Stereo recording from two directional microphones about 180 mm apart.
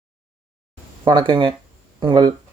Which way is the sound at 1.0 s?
25° right (ahead or behind).